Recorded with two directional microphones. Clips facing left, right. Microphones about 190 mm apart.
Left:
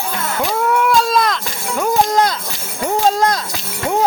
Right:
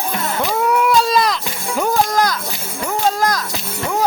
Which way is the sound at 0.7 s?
Centre (ahead or behind).